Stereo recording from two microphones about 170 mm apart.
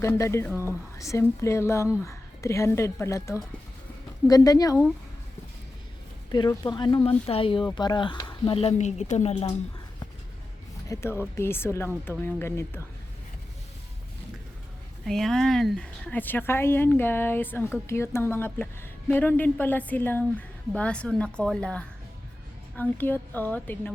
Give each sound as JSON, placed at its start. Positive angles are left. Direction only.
{"t": 0.0, "sound": "speech", "side_deg": 15}
{"t": 6.3, "sound": "speech", "side_deg": 25}
{"t": 10.8, "sound": "speech", "side_deg": 15}
{"t": 15.0, "sound": "speech", "side_deg": 0}